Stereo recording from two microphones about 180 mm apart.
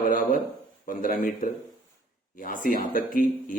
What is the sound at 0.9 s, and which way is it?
Speech, 50° left (ahead or behind).